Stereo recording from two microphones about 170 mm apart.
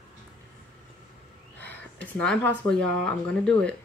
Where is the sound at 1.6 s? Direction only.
10° left (ahead or behind).